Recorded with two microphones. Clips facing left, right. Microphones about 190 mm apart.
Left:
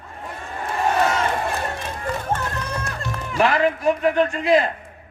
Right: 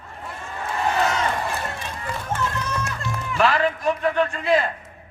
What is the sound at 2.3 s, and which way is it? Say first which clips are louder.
Music: right 1 dB; 55° left (ahead or behind).